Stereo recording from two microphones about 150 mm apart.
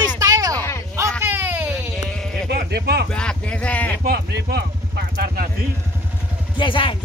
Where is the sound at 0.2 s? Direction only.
25° right (ahead or behind).